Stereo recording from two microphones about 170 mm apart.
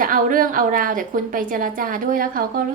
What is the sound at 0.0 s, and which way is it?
A woman's voice, 55° right (ahead or behind).